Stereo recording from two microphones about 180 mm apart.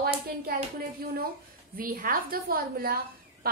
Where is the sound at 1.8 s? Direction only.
55° right (ahead or behind).